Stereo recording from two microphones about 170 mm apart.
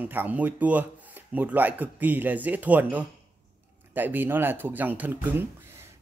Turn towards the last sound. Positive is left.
turn(degrees=-10)  # may be behind; listen again after turning